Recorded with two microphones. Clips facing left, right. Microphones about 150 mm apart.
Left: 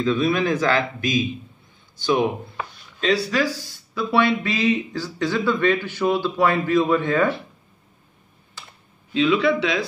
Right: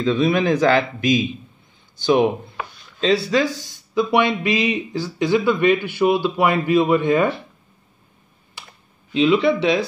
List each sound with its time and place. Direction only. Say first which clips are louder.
0.0 s speech: right 2 dB; 25° right (ahead or behind)
3.0 s speech: right 3 dB; 25° right (ahead or behind); by 7.2 s 10° right (ahead or behind)
9.1 s speech: right 2 dB; 25° right (ahead or behind)